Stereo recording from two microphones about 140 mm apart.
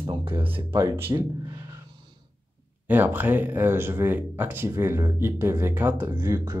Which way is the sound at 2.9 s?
15° right (ahead or behind).